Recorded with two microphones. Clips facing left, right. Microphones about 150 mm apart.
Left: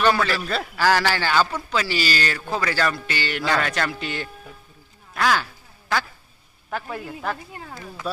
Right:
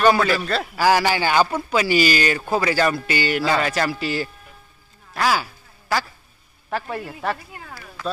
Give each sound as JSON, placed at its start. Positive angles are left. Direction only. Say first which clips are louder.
{"t": 0.0, "sound": "a man's voice", "louder": "right 3 dB", "side_deg": -10}
{"t": 0.4, "sound": "a man's voice", "louder": "right 3 dB", "side_deg": 0}
{"t": 0.7, "sound": "a man's voice", "louder": "right 2 dB", "side_deg": -10}
{"t": 5.1, "sound": "quack", "louder": "right 1 dB", "side_deg": -5}
{"t": 6.7, "sound": "a man's voice", "louder": "right 3 dB", "side_deg": 0}
{"t": 7.3, "sound": "speech", "louder": "left 2 dB", "side_deg": 20}